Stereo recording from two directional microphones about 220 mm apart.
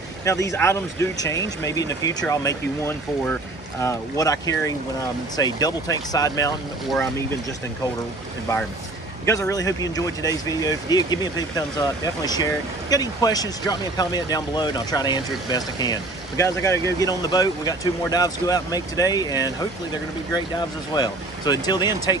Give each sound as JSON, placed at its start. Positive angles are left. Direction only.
{"t": 0.2, "sound": "speech", "side_deg": 15}
{"t": 9.2, "sound": "speech", "side_deg": 15}